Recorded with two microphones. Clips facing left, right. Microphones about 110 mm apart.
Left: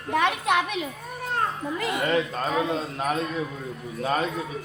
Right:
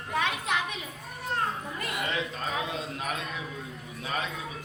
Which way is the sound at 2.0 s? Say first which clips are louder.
Left 9 dB; 50° left (ahead or behind).